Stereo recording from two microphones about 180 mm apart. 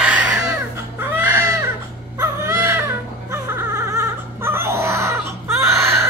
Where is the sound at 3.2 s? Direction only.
15° right (ahead or behind).